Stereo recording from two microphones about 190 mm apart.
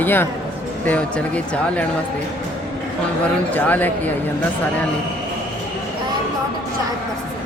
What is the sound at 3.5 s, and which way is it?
Speech, 10° left (ahead or behind).